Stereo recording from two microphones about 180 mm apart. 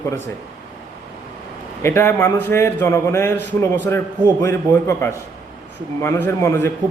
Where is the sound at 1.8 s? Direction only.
15° left (ahead or behind).